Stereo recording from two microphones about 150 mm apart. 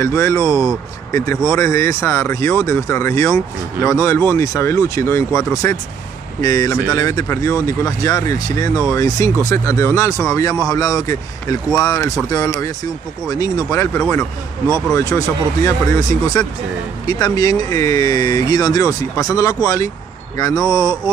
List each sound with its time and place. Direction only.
0.0 s speech: 20° left (ahead or behind)